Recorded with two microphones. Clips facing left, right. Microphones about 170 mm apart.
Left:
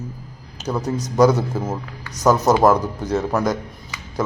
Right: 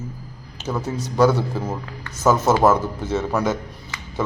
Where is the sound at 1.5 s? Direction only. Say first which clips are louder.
Left 2 dB; 5° left (ahead or behind).